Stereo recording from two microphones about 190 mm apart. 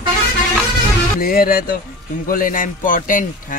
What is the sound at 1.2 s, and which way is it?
Speech, 50° left (ahead or behind).